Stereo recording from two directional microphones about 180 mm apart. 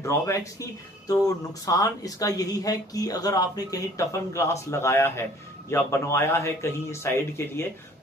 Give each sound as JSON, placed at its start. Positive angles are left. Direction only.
{"t": 0.0, "sound": "speech", "side_deg": 15}